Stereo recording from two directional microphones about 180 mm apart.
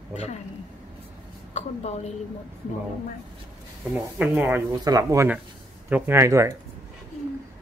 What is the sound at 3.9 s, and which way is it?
Speech, 10° right (ahead or behind).